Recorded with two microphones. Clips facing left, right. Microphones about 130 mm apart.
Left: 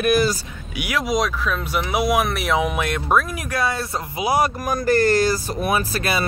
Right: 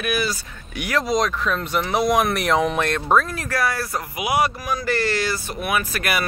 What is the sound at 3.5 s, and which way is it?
Speech, 25° left (ahead or behind).